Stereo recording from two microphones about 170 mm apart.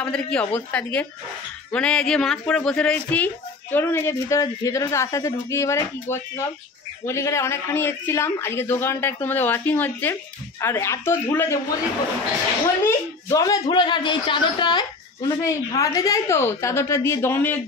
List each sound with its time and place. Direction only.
0.0 s a man's voice: 5° left (ahead or behind)
12.8 s speech: 20° left (ahead or behind)